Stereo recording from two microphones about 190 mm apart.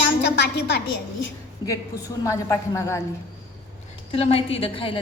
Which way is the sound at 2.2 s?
15° left (ahead or behind).